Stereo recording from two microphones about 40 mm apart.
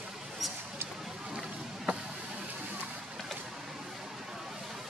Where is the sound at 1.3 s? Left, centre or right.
Centre.